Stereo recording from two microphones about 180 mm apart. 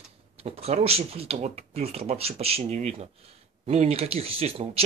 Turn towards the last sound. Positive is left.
turn(degrees=-35)  # may be behind; listen again after turning